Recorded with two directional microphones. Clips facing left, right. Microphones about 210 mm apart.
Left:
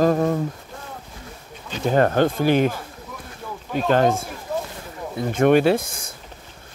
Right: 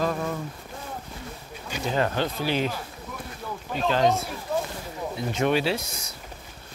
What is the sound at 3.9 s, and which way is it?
Speech, 50° left (ahead or behind).